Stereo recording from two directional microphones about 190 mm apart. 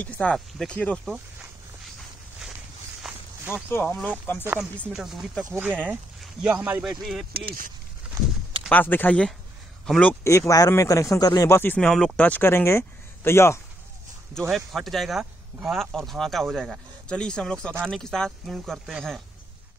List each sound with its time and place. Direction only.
0.0 s speech: 5° left (ahead or behind)
3.0 s walk: 5° right (ahead or behind)
3.5 s speech: 5° left (ahead or behind); by 5.8 s 10° right (ahead or behind)
5.9 s a sound: 5° right (ahead or behind)
6.5 s speech: 10° right (ahead or behind)
7.3 s speech: 50° right (ahead or behind)
8.0 s a sound: 5° right (ahead or behind)
8.6 s speech: 10° left (ahead or behind)
14.5 s speech: centre (ahead or behind)